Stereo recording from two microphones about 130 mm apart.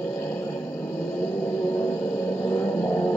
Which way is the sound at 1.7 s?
20° left (ahead or behind).